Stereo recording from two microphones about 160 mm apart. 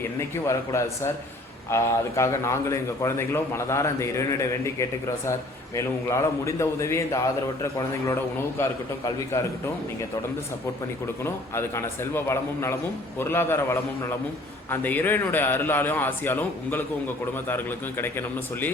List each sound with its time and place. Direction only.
0.2 s a man's voice: 20° left (ahead or behind)
11.2 s a man's voice: 15° left (ahead or behind)